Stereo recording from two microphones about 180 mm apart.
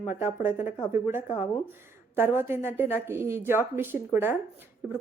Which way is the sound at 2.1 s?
10° right (ahead or behind).